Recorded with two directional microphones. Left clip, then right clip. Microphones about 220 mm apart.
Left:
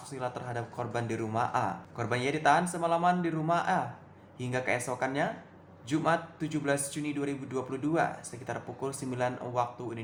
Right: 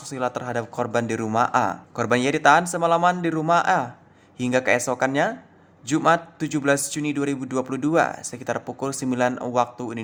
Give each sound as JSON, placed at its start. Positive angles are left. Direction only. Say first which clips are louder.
{"t": 0.0, "sound": "a man's voice", "louder": "right 10 dB", "side_deg": -45}